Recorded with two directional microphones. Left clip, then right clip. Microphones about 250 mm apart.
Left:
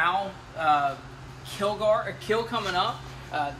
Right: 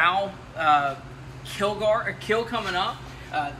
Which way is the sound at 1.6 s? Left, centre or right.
Left.